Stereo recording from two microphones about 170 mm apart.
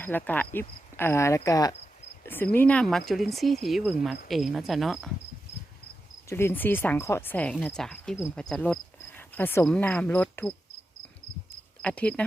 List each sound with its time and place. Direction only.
0.0 s speech: 10° left (ahead or behind)
6.2 s speech: 15° left (ahead or behind)
11.8 s speech: 5° left (ahead or behind)